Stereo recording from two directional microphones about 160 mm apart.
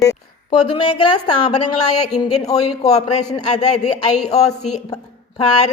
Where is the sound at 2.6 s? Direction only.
40° left (ahead or behind).